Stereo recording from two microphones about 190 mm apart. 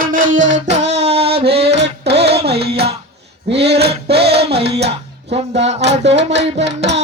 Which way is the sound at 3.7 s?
60° right (ahead or behind).